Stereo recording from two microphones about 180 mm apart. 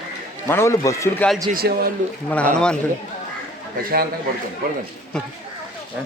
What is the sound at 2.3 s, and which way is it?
Speech, 5° left (ahead or behind).